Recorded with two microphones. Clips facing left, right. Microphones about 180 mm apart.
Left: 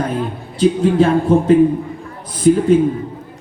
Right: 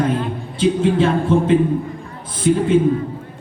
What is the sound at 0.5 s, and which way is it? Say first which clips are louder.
Speech: left 3 dB; 40° left (ahead or behind).